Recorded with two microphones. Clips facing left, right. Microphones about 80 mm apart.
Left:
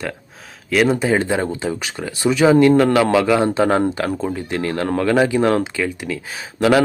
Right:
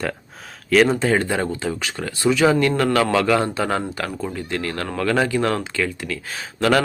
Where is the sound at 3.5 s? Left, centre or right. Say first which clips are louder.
Left 7 dB; left.